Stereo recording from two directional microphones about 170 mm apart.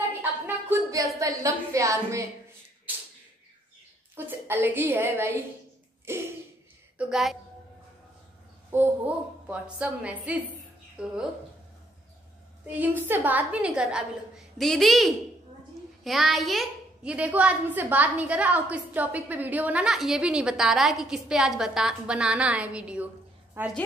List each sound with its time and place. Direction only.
0.2 s a sound: 10° right (ahead or behind)
4.3 s a woman's voice: 10° right (ahead or behind)
7.0 s a woman's voice: centre (ahead or behind)
8.7 s a woman's voice: 10° right (ahead or behind)
12.7 s a woman's voice: 10° right (ahead or behind)